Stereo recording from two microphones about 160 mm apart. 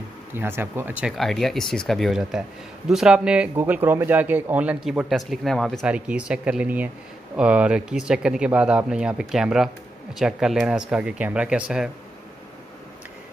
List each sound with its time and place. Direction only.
0.3 s speech: 15° right (ahead or behind)